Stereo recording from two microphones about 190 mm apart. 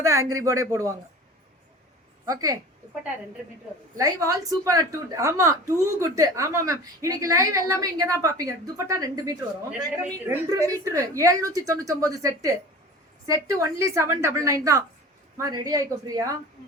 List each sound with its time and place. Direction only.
0.0 s a woman's voice: 15° right (ahead or behind)
2.2 s a woman's voice: 20° right (ahead or behind)
3.9 s a woman's voice: 15° right (ahead or behind)